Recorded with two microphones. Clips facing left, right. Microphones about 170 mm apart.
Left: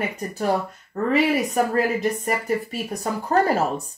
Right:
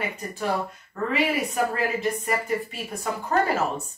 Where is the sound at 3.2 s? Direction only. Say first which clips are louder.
Left 4 dB; 35° left (ahead or behind).